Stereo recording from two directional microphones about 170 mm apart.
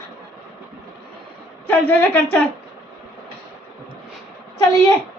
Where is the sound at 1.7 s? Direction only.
10° left (ahead or behind).